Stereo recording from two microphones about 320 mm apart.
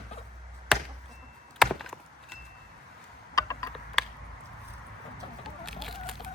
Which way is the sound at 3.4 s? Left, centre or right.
Centre.